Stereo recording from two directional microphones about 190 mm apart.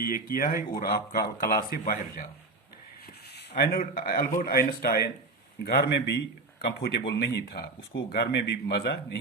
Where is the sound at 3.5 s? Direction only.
50° left (ahead or behind).